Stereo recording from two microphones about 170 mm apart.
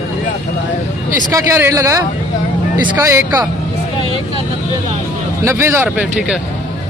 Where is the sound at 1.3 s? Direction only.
15° right (ahead or behind).